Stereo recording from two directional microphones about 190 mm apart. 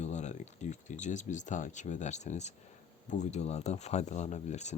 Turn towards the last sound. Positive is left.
turn(degrees=35)  # may be behind; listen again after turning